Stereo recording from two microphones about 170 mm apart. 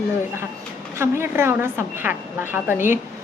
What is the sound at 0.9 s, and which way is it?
A woman's voice, 15° right (ahead or behind).